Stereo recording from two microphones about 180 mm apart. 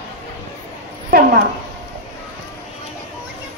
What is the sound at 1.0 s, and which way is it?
Speech, 55° right (ahead or behind).